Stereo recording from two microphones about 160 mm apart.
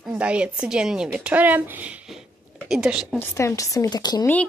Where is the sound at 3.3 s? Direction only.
20° left (ahead or behind).